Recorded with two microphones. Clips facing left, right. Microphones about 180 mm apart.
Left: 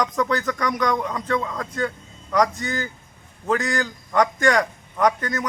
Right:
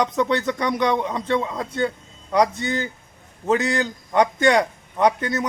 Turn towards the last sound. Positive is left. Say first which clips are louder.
# right 2 dB
turn(degrees=-25)  # may be behind; listen again after turning